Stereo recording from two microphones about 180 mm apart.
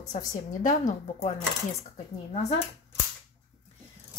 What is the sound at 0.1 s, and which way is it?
A woman's voice, 45° left (ahead or behind).